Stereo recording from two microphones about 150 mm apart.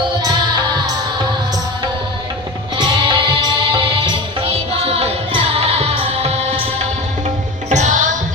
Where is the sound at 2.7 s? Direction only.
30° right (ahead or behind).